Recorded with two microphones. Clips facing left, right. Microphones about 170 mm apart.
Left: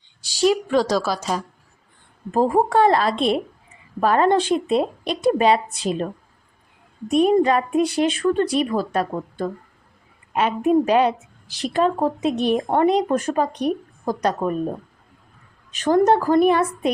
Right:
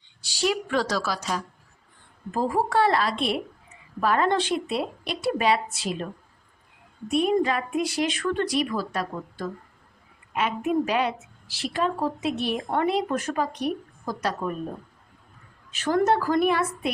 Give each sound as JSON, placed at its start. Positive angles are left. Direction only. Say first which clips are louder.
{"t": 0.3, "sound": "a sound", "louder": "left 7 dB", "side_deg": 40}
{"t": 0.5, "sound": "a woman's voice", "louder": "left 6 dB", "side_deg": 20}
{"t": 2.3, "sound": "a woman's voice", "louder": "left 6 dB", "side_deg": 45}
{"t": 4.7, "sound": "a woman's voice", "louder": "left 8 dB", "side_deg": 25}
{"t": 7.1, "sound": "a woman's voice", "louder": "left 6 dB", "side_deg": 40}
{"t": 10.3, "sound": "a woman's voice", "louder": "left 6 dB", "side_deg": 35}
{"t": 15.8, "sound": "a woman's voice", "louder": "left 5 dB", "side_deg": 35}